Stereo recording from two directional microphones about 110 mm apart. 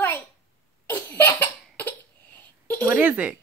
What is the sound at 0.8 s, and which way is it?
Cough, 15° left (ahead or behind).